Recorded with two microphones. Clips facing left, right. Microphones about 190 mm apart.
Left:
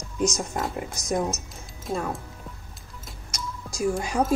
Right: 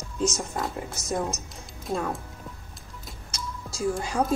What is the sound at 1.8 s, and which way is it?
Speech, centre (ahead or behind).